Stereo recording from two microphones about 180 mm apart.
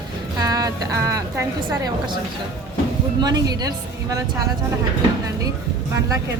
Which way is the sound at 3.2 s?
20° right (ahead or behind).